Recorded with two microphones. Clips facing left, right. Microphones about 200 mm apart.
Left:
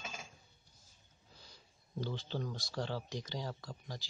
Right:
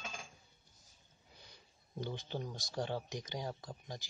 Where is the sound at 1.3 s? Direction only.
20° right (ahead or behind).